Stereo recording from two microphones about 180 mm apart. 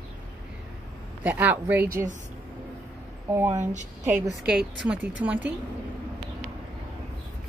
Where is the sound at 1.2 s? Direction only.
10° right (ahead or behind).